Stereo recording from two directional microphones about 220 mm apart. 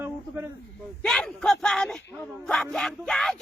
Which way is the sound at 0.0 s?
10° right (ahead or behind).